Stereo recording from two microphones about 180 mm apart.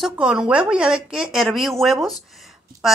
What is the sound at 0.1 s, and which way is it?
A woman's voice, 5° right (ahead or behind).